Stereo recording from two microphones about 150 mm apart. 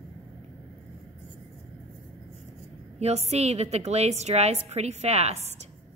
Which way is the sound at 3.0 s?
45° right (ahead or behind).